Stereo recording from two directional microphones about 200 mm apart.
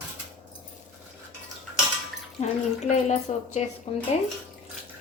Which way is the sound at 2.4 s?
35° left (ahead or behind).